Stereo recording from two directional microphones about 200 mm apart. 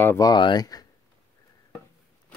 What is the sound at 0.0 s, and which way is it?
Speech, 15° left (ahead or behind).